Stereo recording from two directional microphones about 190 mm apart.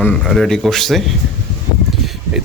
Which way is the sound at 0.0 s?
5° left (ahead or behind).